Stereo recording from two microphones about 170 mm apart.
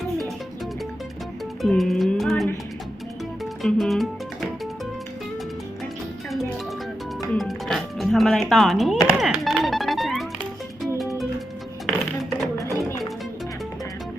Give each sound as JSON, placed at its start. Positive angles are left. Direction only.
{"t": 1.6, "sound": "music", "side_deg": 0}
{"t": 3.6, "sound": "music", "side_deg": 0}
{"t": 7.3, "sound": "music", "side_deg": 0}
{"t": 12.5, "sound": "music", "side_deg": 15}